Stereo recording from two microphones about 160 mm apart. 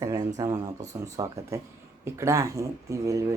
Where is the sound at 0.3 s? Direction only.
20° right (ahead or behind).